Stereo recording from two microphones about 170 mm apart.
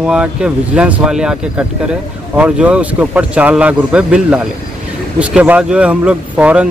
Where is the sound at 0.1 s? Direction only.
5° right (ahead or behind).